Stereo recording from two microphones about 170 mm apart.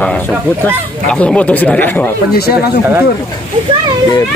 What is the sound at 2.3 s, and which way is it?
Speech, 65° left (ahead or behind).